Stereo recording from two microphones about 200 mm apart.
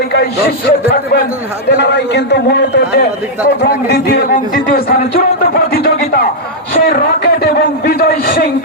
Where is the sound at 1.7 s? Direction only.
60° left (ahead or behind).